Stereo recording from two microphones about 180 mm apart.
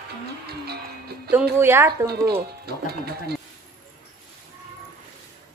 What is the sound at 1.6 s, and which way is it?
Speech, 15° right (ahead or behind).